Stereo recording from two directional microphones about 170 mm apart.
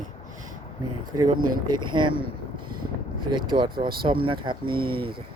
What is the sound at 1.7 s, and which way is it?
Speech, 25° right (ahead or behind).